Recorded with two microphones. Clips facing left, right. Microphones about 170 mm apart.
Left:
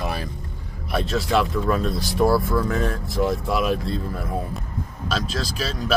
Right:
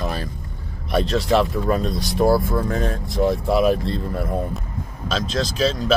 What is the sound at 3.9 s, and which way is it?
Speech, centre (ahead or behind).